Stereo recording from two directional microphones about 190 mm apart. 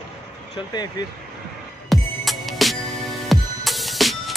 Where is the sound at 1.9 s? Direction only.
Centre (ahead or behind).